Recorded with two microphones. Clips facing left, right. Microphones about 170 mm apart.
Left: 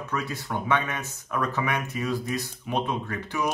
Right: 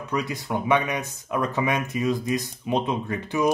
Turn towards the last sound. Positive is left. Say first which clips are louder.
# right 4 dB
turn(degrees=-20)  # may be behind; listen again after turning